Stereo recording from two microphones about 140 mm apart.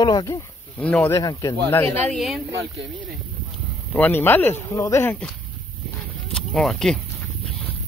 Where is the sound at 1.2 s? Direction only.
25° left (ahead or behind).